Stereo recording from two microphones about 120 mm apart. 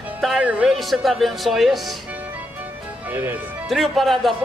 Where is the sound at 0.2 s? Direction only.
Centre (ahead or behind).